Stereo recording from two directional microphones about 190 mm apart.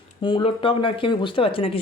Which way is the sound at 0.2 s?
25° left (ahead or behind).